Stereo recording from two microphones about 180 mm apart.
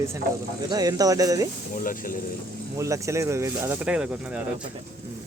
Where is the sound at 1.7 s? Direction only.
50° left (ahead or behind).